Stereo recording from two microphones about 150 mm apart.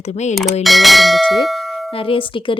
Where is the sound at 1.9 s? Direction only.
35° left (ahead or behind).